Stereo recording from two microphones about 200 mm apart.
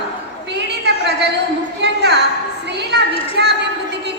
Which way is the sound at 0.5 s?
60° right (ahead or behind).